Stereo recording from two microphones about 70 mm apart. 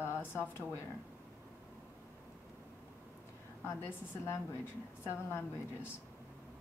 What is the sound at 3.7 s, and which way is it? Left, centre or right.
Speech, left.